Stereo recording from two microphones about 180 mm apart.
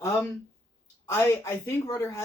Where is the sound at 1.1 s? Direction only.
15° left (ahead or behind).